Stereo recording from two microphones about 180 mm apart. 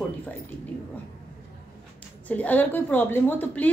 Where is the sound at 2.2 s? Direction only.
10° left (ahead or behind).